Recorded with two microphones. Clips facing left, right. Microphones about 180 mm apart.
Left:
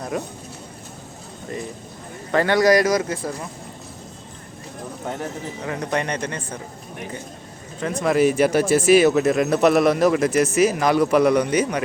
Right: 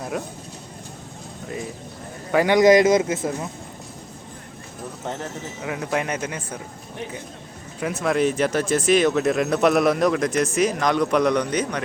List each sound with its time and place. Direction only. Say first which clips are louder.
2.3 s a man's voice: right 2 dB; 15° right (ahead or behind)
5.6 s speech: even; 5° right (ahead or behind)
7.8 s speech: left 3 dB; 5° right (ahead or behind); by 11.8 s 10° left (ahead or behind)